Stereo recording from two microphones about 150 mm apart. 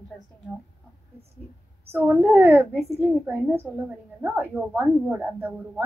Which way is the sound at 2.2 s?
15° right (ahead or behind).